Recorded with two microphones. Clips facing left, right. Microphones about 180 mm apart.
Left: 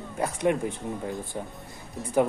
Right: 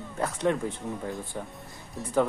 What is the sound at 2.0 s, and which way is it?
Speech, centre (ahead or behind).